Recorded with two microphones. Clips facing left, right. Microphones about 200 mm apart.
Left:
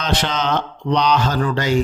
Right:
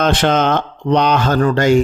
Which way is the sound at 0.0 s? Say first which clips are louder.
Right 7 dB; 50° right (ahead or behind).